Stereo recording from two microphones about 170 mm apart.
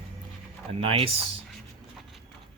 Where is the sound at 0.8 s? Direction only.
35° right (ahead or behind).